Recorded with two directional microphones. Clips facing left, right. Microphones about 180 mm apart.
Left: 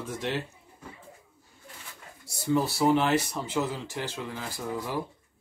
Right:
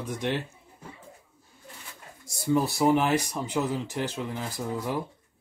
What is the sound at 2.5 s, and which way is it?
Speech, 10° right (ahead or behind).